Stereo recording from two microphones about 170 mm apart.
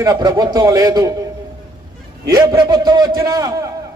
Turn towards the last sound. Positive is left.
turn(degrees=-20)  # may be behind; listen again after turning